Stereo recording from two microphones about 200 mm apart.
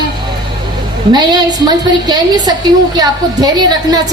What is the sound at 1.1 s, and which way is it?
A woman's voice, 20° right (ahead or behind).